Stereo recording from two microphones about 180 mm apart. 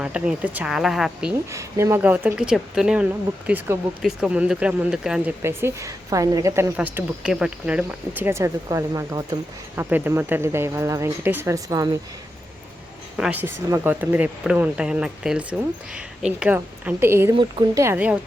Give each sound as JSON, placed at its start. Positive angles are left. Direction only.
{"t": 0.0, "sound": "speech", "side_deg": -5}
{"t": 1.5, "sound": "speech", "side_deg": -15}
{"t": 13.1, "sound": "speech", "side_deg": -5}
{"t": 17.3, "sound": "speech", "side_deg": -25}
{"t": 17.8, "sound": "speech", "side_deg": -10}